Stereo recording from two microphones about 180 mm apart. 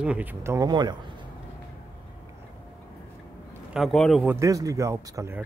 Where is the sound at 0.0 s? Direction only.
10° right (ahead or behind); by 1.1 s 25° right (ahead or behind).